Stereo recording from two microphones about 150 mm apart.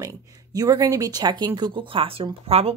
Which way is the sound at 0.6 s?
20° right (ahead or behind).